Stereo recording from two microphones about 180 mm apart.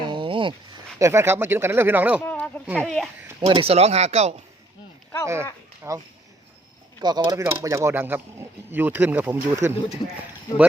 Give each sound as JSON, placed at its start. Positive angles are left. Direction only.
{"t": 0.0, "sound": "a sound", "side_deg": -25}
{"t": 0.9, "sound": "speech", "side_deg": -15}
{"t": 2.2, "sound": "speech", "side_deg": 10}
{"t": 3.4, "sound": "speech", "side_deg": -30}
{"t": 5.2, "sound": "speech", "side_deg": -15}
{"t": 7.0, "sound": "speech", "side_deg": -25}